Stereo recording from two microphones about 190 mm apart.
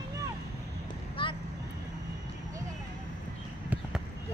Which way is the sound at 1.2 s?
25° left (ahead or behind).